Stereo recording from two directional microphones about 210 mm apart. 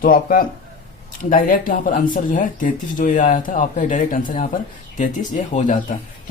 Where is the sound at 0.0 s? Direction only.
40° left (ahead or behind).